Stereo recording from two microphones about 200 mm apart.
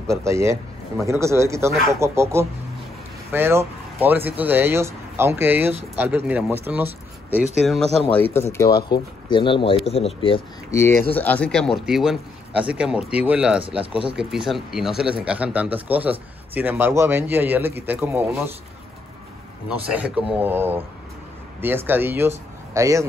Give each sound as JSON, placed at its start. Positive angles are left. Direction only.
{"t": 0.2, "sound": "speech", "side_deg": -15}
{"t": 8.1, "sound": "speech", "side_deg": 10}
{"t": 10.7, "sound": "speech", "side_deg": 15}
{"t": 19.9, "sound": "speech", "side_deg": -5}